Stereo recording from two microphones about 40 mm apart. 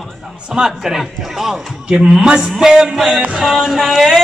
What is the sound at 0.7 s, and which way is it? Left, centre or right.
A man's voice, centre.